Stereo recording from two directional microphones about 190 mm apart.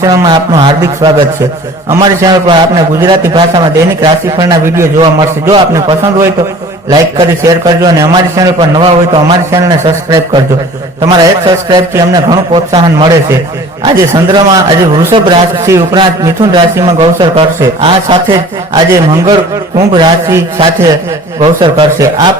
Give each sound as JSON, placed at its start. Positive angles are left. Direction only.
{"t": 0.0, "sound": "a man's voice", "side_deg": -20}
{"t": 18.3, "sound": "a man's voice", "side_deg": -15}